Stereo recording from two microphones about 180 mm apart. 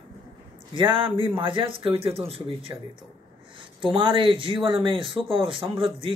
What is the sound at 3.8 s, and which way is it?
Speech, 30° right (ahead or behind).